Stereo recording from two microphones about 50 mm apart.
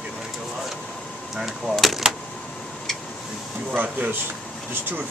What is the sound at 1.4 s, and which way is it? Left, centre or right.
Speech, centre.